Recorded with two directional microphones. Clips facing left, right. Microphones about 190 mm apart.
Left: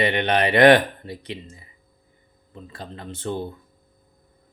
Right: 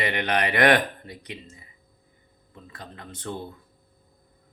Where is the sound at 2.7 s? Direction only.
30° left (ahead or behind).